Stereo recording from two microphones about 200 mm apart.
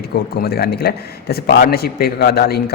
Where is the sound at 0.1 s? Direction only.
50° left (ahead or behind).